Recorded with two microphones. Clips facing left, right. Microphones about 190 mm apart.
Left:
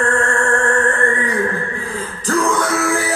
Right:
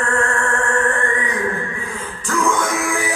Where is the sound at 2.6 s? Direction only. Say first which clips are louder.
Left 3 dB; 15° right (ahead or behind).